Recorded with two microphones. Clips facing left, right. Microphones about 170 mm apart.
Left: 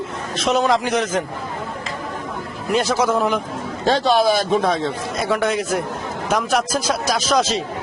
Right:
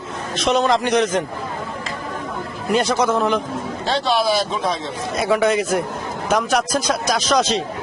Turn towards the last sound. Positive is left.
turn(degrees=0)  # may be behind; listen again after turning